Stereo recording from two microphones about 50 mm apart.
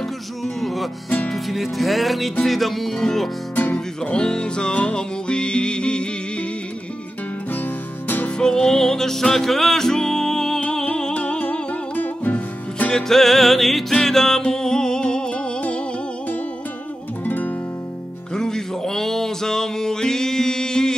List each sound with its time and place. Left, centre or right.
0.6 s music: centre
8.4 s music: centre
11.9 s music: left
12.9 s music: centre
17.2 s music: left
18.3 s a sound: centre